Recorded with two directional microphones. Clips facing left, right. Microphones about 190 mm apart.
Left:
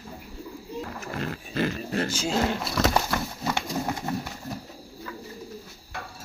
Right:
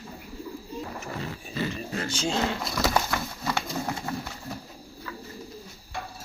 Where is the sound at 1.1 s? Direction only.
65° left (ahead or behind).